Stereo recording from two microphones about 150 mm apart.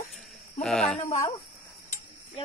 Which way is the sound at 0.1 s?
5° left (ahead or behind).